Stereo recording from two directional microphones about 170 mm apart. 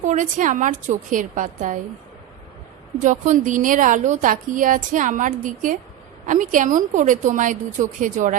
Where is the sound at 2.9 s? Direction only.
45° right (ahead or behind).